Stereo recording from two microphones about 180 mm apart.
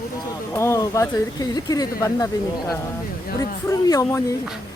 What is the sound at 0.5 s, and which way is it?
Speech, 15° left (ahead or behind).